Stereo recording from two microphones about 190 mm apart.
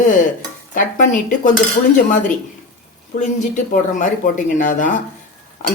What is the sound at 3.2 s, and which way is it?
Speech, 40° left (ahead or behind).